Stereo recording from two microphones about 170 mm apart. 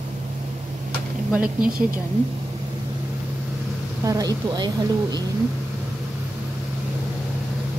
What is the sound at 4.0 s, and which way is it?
Speech, 20° right (ahead or behind).